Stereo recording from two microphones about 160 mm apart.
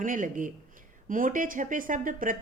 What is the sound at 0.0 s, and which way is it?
Speech, 55° right (ahead or behind).